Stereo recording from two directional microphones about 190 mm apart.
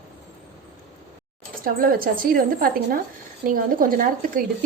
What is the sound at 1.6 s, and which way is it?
A woman's voice, 50° right (ahead or behind).